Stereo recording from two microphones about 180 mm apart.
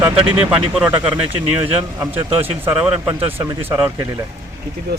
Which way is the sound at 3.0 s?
15° right (ahead or behind).